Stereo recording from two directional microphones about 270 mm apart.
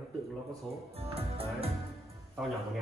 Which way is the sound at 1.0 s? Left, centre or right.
Right.